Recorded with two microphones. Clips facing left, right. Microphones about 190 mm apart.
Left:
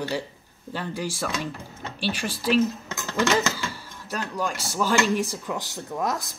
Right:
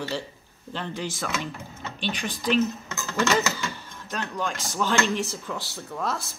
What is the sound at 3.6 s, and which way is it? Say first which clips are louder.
Speech: even; 10° left (ahead or behind).